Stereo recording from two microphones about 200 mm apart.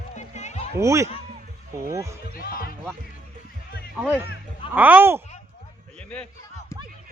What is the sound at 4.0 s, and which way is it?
Speech, 10° right (ahead or behind).